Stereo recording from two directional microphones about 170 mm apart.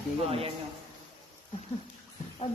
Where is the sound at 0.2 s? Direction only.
35° right (ahead or behind).